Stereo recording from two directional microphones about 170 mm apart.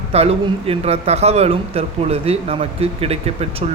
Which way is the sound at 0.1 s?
35° right (ahead or behind).